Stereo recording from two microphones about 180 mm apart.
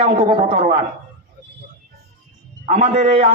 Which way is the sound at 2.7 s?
35° right (ahead or behind).